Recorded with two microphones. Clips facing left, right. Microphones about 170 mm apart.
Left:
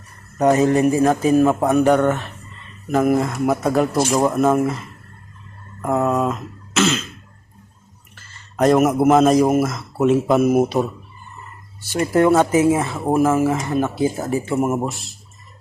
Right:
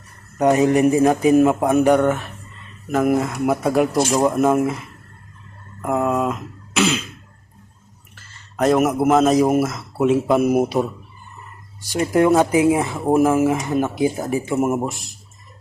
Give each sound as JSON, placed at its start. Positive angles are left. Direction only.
{"t": 0.3, "sound": "speech", "side_deg": -15}
{"t": 8.5, "sound": "speech", "side_deg": 0}
{"t": 11.8, "sound": "speech", "side_deg": -15}